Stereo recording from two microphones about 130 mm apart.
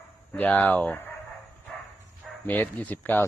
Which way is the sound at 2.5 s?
10° left (ahead or behind).